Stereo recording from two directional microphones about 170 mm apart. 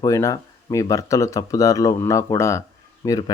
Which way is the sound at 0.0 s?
20° left (ahead or behind).